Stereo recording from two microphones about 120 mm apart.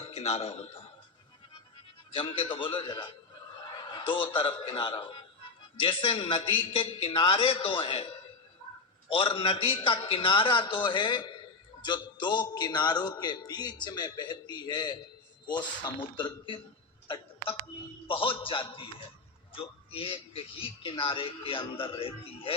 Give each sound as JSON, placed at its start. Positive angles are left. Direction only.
{"t": 0.0, "sound": "a man's voice", "side_deg": 60}
{"t": 2.1, "sound": "a man's voice", "side_deg": 50}
{"t": 3.8, "sound": "a sound", "side_deg": 40}
{"t": 4.3, "sound": "a man's voice", "side_deg": 40}